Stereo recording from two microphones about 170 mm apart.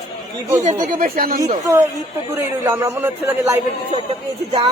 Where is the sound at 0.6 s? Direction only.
45° right (ahead or behind).